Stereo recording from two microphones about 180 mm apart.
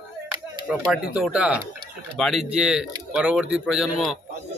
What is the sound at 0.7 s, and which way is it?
Speech, 5° right (ahead or behind).